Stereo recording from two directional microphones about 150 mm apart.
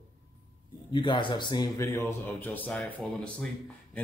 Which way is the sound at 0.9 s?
35° left (ahead or behind).